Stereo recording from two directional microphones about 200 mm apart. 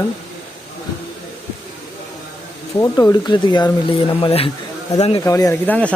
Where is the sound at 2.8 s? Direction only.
20° left (ahead or behind).